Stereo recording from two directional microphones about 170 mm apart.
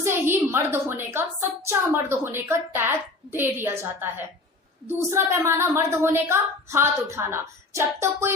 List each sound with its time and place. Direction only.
0.0 s a woman's voice: 15° right (ahead or behind)